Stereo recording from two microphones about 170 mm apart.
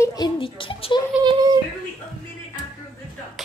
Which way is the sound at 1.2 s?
25° right (ahead or behind).